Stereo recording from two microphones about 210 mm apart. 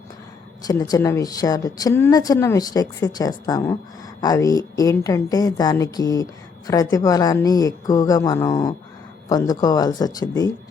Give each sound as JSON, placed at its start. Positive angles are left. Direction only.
{"t": 0.6, "sound": "a woman's voice", "side_deg": 15}